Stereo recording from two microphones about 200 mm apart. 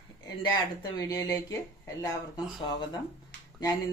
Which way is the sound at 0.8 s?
15° left (ahead or behind).